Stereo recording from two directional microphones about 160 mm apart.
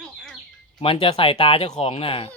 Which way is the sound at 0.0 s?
Centre (ahead or behind).